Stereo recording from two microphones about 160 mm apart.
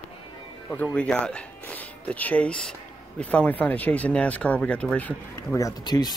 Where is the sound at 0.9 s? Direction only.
5° left (ahead or behind).